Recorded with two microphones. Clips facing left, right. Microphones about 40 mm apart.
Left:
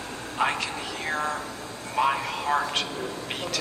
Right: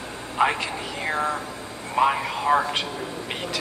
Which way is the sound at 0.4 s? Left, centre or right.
Centre.